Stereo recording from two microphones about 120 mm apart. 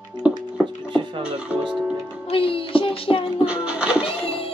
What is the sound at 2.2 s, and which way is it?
Music, 50° left (ahead or behind).